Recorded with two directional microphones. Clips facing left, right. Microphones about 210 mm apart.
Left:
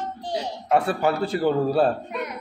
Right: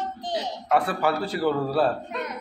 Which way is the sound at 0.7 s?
25° left (ahead or behind).